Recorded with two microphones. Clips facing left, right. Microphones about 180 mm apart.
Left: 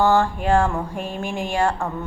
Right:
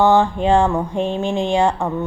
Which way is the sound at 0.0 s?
20° right (ahead or behind).